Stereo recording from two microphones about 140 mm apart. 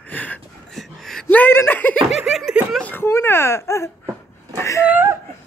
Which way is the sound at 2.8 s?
15° left (ahead or behind).